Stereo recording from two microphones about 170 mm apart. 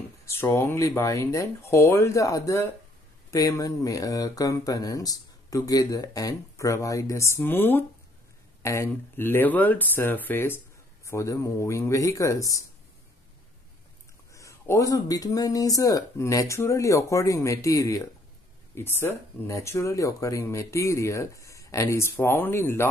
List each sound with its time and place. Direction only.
0.2 s speech: 15° left (ahead or behind)
14.3 s speech: 15° left (ahead or behind)